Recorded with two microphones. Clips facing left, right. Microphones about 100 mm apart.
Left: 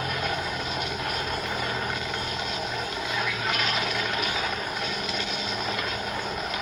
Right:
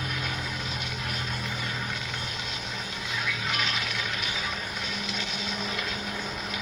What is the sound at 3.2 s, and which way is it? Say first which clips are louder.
Music: left 2 dB; 50° left (ahead or behind).